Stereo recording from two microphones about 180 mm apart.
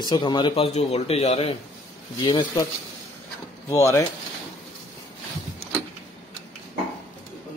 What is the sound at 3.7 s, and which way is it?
Speech, 15° left (ahead or behind).